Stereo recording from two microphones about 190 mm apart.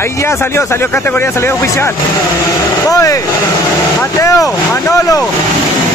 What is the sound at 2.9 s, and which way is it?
Speech, 15° left (ahead or behind).